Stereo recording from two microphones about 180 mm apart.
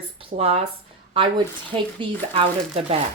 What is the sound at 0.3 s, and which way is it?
Speech, 35° right (ahead or behind).